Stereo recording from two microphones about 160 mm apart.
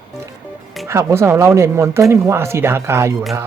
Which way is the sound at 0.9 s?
15° right (ahead or behind).